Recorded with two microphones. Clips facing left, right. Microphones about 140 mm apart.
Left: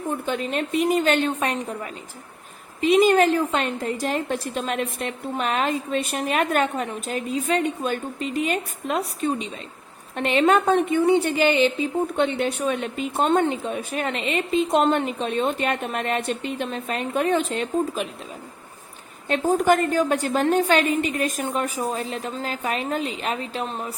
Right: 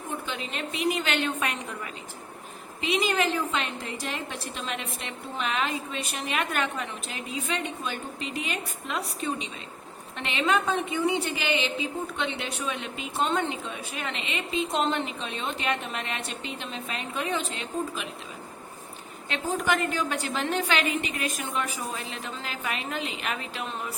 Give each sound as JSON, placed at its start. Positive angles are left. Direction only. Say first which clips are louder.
{"t": 0.3, "sound": "a woman's voice", "louder": "left 9 dB", "side_deg": 45}
{"t": 19.3, "sound": "a woman's voice", "louder": "left 8 dB", "side_deg": 45}